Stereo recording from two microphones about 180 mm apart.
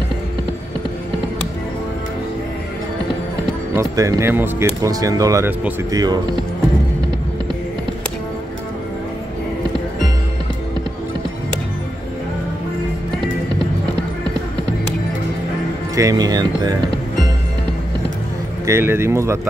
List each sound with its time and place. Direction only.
3.7 s speech: 20° right (ahead or behind)
15.9 s speech: 20° right (ahead or behind)
18.7 s speech: 15° right (ahead or behind)